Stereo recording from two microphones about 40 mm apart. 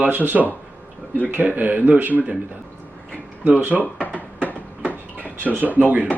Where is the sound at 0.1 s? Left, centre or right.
Right.